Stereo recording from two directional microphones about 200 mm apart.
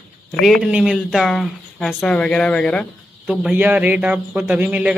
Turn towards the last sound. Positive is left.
turn(degrees=-5)  # may be behind; listen again after turning